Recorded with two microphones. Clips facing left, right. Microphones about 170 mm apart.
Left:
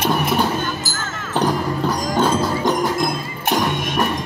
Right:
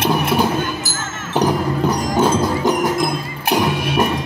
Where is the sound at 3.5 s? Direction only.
5° right (ahead or behind).